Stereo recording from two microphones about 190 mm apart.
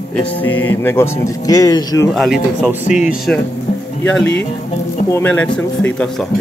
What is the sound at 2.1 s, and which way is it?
Speech, centre (ahead or behind).